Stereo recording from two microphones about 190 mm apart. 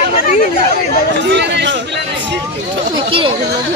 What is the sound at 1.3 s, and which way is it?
Speech, 65° right (ahead or behind).